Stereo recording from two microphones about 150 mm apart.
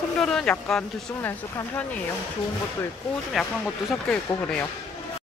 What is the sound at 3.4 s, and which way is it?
Speech, centre (ahead or behind).